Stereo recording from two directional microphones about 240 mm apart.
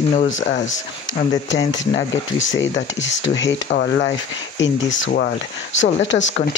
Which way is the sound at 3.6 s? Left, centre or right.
Left.